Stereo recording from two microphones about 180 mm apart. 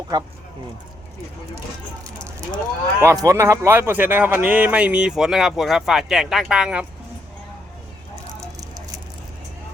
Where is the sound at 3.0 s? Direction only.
15° right (ahead or behind).